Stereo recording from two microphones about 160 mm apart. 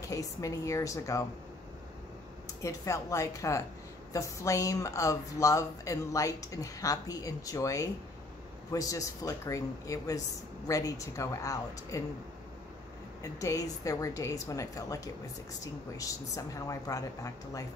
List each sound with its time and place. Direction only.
0.1 s speech: 20° left (ahead or behind)
2.6 s speech: 20° left (ahead or behind)
13.2 s speech: 20° left (ahead or behind)